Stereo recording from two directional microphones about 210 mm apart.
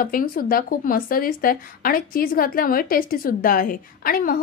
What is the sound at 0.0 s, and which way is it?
Speech, 40° left (ahead or behind).